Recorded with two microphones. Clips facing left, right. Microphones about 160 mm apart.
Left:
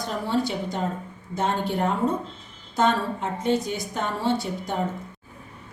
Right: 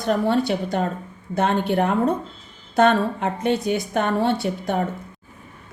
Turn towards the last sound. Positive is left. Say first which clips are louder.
# right 4 dB
turn(degrees=-60)  # may be behind; listen again after turning